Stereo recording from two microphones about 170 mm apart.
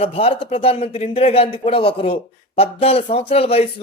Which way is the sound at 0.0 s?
35° left (ahead or behind).